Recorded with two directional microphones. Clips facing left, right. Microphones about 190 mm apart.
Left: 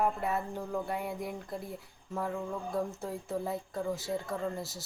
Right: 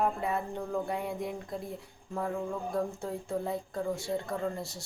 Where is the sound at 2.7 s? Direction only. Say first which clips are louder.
Right 1 dB; centre (ahead or behind).